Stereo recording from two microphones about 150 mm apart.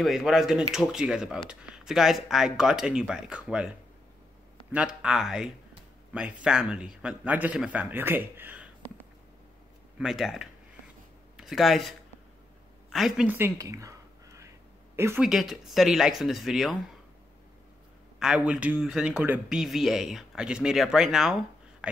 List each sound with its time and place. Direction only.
0.0 s speech: centre (ahead or behind)
4.7 s speech: 5° right (ahead or behind)
9.9 s speech: centre (ahead or behind)
12.9 s speech: centre (ahead or behind)
13.3 s a sound: 20° right (ahead or behind)
15.0 s speech: 15° right (ahead or behind)
15.2 s speech: centre (ahead or behind)
18.2 s speech: 5° right (ahead or behind)